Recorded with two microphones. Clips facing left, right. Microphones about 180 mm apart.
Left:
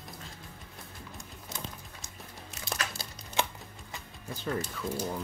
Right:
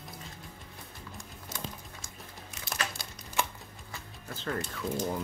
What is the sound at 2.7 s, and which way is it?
Crumpling, 30° left (ahead or behind).